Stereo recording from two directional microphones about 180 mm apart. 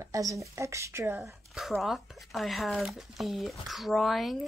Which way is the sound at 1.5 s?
Centre (ahead or behind).